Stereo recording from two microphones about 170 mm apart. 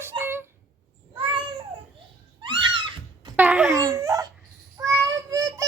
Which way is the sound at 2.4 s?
30° right (ahead or behind).